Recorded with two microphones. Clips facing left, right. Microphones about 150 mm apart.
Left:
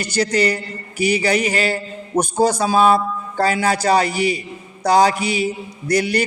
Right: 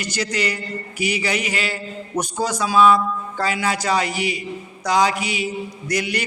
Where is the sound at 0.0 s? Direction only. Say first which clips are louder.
Left 6 dB; 35° left (ahead or behind).